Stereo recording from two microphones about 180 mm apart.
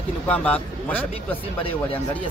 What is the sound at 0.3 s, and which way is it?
Speech, 10° left (ahead or behind).